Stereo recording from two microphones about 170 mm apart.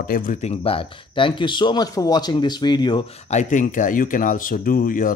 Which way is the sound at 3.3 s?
50° left (ahead or behind).